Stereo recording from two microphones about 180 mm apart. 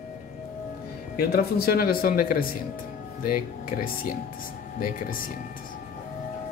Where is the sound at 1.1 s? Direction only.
55° left (ahead or behind).